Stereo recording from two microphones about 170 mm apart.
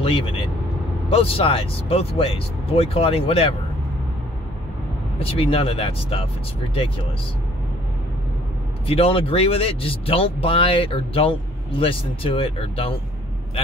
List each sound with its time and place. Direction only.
0.0 s speech: 30° left (ahead or behind)
5.2 s speech: 35° left (ahead or behind)
8.8 s speech: 35° left (ahead or behind)